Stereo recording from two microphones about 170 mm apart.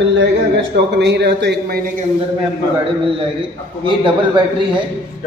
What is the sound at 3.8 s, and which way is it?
Speech, 30° right (ahead or behind).